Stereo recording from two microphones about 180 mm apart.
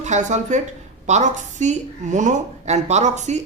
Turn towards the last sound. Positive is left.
turn(degrees=-40)  # may be behind; listen again after turning